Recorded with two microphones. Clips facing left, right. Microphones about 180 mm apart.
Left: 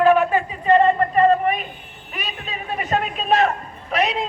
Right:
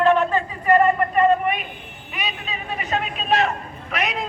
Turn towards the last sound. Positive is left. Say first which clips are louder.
# left 4 dB
turn(degrees=30)  # may be behind; listen again after turning